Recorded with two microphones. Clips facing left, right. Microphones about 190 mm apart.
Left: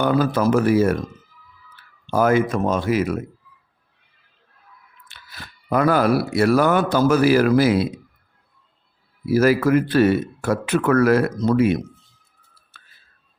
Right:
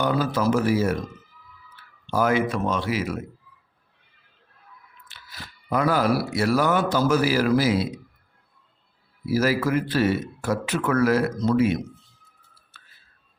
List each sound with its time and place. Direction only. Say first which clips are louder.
0.0 s speech: left 4 dB; 55° left (ahead or behind)
2.0 s speech: left 4 dB; 50° left (ahead or behind)
5.0 s speech: left 1 dB; 55° left (ahead or behind)
9.3 s speech: left 6 dB; 55° left (ahead or behind)